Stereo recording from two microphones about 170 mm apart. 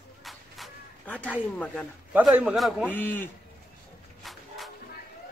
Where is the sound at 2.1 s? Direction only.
5° right (ahead or behind).